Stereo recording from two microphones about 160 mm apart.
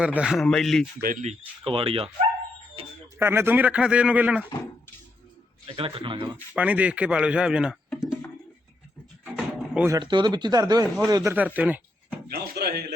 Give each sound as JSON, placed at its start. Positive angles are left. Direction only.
{"t": 0.0, "sound": "speech", "side_deg": -5}
{"t": 1.0, "sound": "speech", "side_deg": -55}
{"t": 1.3, "sound": "speech", "side_deg": -35}
{"t": 2.8, "sound": "a sound", "side_deg": -35}
{"t": 3.2, "sound": "speech", "side_deg": -15}
{"t": 5.6, "sound": "speech", "side_deg": -35}
{"t": 6.3, "sound": "speech", "side_deg": -10}
{"t": 7.9, "sound": "a sound", "side_deg": -5}
{"t": 9.3, "sound": "music", "side_deg": -10}
{"t": 9.9, "sound": "speech", "side_deg": -30}
{"t": 12.3, "sound": "a sound", "side_deg": -75}